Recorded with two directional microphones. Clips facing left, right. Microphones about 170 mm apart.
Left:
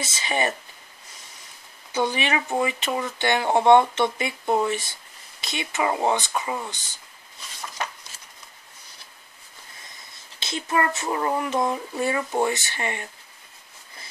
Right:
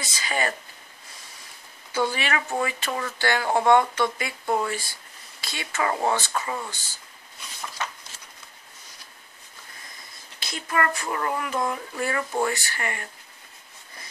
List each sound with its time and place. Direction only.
0.0 s speech: 25° left (ahead or behind)
1.9 s speech: 20° left (ahead or behind)
10.4 s speech: 25° left (ahead or behind)